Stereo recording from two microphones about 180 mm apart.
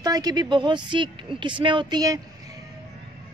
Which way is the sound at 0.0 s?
20° right (ahead or behind).